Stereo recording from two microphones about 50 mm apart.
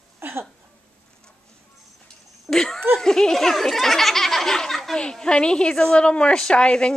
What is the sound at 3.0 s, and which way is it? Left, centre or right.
Speech, centre.